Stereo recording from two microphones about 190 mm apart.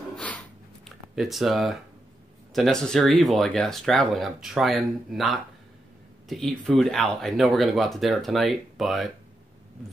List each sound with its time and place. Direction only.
0.1 s sniff: 5° left (ahead or behind)
0.8 s speech: centre (ahead or behind)